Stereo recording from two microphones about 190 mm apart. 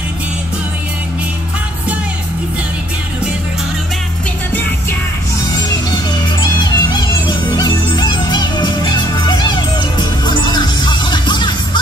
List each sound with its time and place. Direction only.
6.4 s music: 20° left (ahead or behind)